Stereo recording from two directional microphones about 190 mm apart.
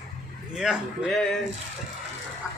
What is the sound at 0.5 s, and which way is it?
Speech, centre (ahead or behind).